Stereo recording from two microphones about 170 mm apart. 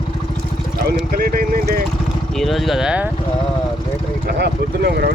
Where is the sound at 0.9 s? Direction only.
60° right (ahead or behind).